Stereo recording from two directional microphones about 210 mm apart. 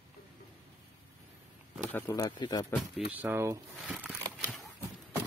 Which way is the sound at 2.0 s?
15° left (ahead or behind).